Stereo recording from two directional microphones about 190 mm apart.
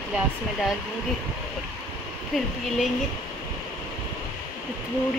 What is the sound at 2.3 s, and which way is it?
Speech, centre (ahead or behind).